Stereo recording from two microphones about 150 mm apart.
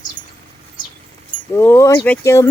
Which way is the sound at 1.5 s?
15° left (ahead or behind).